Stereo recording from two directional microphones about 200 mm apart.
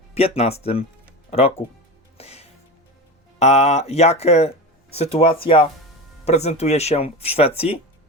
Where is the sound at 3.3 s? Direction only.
30° left (ahead or behind).